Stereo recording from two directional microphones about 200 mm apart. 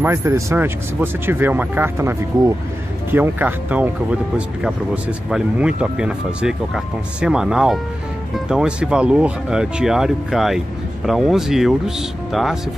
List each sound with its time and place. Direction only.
0.0 s speech: 15° right (ahead or behind)
5.3 s speech: 5° right (ahead or behind)